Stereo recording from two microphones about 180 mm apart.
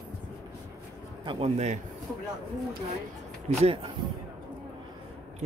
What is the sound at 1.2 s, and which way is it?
Speech, 35° right (ahead or behind).